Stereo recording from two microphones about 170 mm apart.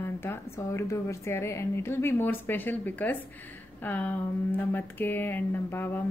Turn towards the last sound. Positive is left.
turn(degrees=10)  # may be behind; listen again after turning